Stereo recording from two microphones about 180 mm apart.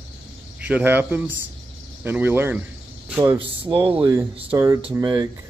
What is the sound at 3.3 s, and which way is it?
Speech, 30° right (ahead or behind).